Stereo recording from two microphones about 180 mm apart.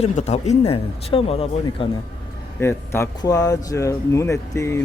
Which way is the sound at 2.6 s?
15° left (ahead or behind).